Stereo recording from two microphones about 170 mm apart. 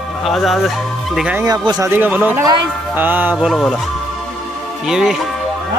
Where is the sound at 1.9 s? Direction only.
10° right (ahead or behind).